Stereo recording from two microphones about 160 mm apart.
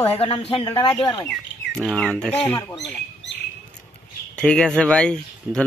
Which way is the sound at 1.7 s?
5° left (ahead or behind).